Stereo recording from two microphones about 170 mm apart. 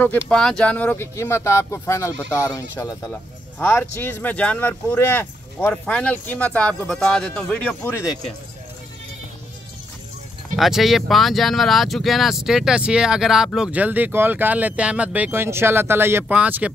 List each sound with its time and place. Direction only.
0.0 s speech: 5° left (ahead or behind)
10.5 s speech: centre (ahead or behind)